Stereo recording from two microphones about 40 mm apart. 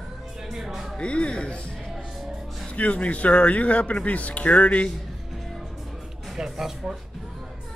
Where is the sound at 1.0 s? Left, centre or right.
Left.